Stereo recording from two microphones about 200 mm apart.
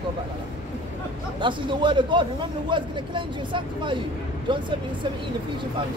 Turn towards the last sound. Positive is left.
turn(degrees=-25)  # may be behind; listen again after turning